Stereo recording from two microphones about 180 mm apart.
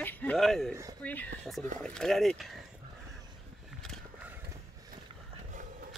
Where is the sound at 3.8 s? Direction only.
Centre (ahead or behind).